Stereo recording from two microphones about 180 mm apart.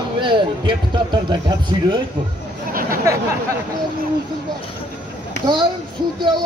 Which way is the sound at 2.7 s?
50° right (ahead or behind).